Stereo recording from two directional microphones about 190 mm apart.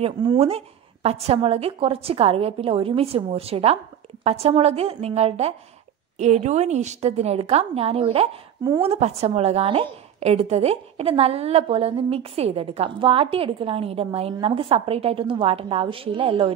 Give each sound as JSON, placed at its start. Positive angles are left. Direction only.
{"t": 0.0, "sound": "a woman's voice", "side_deg": -30}